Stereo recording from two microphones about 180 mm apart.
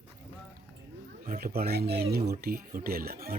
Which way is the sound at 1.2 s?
55° right (ahead or behind).